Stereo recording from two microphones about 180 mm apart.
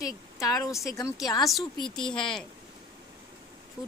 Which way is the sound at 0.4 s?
20° left (ahead or behind).